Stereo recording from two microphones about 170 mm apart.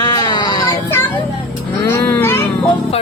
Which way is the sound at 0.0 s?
25° left (ahead or behind).